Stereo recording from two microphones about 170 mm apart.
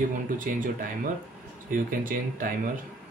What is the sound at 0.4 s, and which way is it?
Speech, 50° right (ahead or behind).